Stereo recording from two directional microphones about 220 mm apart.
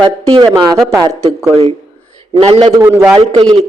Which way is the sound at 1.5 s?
25° right (ahead or behind).